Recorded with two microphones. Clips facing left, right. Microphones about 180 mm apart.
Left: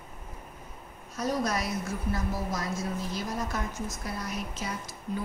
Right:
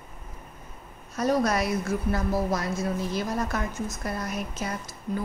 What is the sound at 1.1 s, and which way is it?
A woman's voice, 60° right (ahead or behind).